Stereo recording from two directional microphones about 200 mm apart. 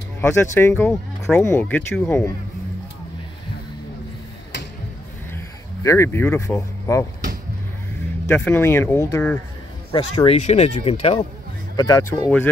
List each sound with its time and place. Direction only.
0.2 s speech: 10° left (ahead or behind)
5.9 s speech: 15° left (ahead or behind)
8.3 s speech: 10° left (ahead or behind)
9.9 s speech: 30° left (ahead or behind)
11.7 s speech: 20° left (ahead or behind)